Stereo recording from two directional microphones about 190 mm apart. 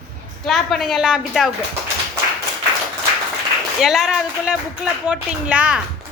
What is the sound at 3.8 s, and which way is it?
A woman's voice, centre (ahead or behind).